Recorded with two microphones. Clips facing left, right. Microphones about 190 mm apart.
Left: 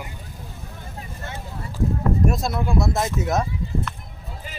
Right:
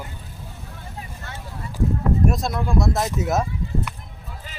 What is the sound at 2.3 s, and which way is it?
Speech, centre (ahead or behind).